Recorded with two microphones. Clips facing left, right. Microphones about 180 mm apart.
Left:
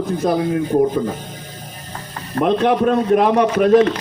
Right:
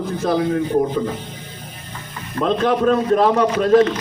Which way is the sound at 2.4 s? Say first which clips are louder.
Left 1 dB; 20° left (ahead or behind).